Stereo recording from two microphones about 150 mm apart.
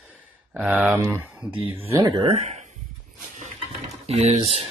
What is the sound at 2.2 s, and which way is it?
Speech, 40° right (ahead or behind).